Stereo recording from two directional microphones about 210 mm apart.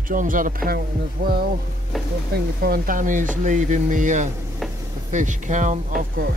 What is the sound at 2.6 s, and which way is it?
Speech, 45° right (ahead or behind).